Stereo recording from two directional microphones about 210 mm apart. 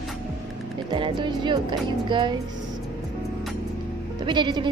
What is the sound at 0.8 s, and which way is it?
A woman's voice, 25° right (ahead or behind).